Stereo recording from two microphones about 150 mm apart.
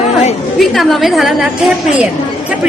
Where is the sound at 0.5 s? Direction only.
Centre (ahead or behind).